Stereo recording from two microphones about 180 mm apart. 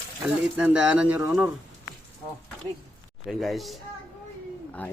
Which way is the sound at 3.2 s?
Centre (ahead or behind).